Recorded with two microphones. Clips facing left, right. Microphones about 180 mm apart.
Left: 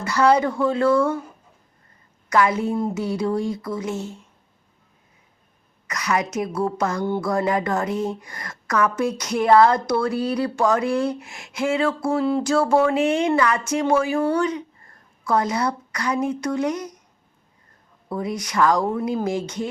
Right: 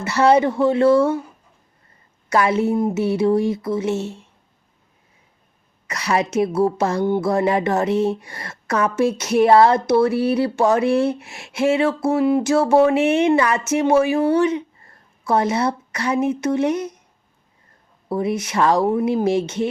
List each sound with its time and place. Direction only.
0.0 s a woman's voice: 25° right (ahead or behind)
2.3 s a woman's voice: 25° right (ahead or behind)
5.9 s a woman's voice: 30° right (ahead or behind)
18.1 s a woman's voice: 25° right (ahead or behind)